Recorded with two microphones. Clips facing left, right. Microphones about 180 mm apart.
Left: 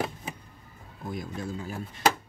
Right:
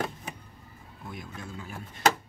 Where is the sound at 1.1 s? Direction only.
35° left (ahead or behind).